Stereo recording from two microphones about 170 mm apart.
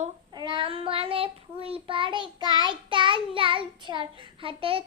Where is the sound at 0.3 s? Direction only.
25° right (ahead or behind).